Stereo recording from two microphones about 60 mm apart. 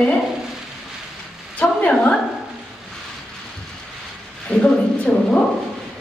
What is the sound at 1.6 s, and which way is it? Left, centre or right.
Speech, left.